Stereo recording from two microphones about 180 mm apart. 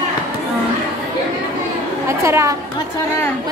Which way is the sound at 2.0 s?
15° right (ahead or behind).